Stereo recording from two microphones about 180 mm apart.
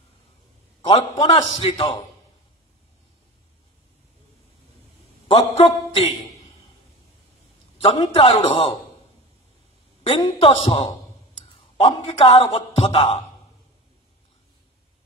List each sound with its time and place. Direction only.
0.8 s a man's voice: 30° left (ahead or behind)
5.3 s a man's voice: 35° left (ahead or behind)
7.7 s a man's voice: 30° left (ahead or behind)
10.0 s a man's voice: 30° left (ahead or behind)